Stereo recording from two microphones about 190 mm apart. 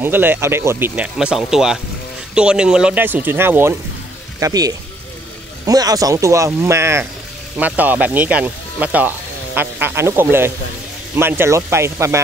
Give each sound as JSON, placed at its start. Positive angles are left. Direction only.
{"t": 0.0, "sound": "speech", "side_deg": -10}